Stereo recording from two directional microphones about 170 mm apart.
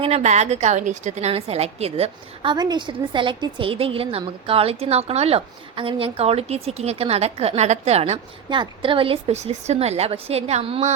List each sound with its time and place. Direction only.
0.0 s a woman's voice: 40° right (ahead or behind)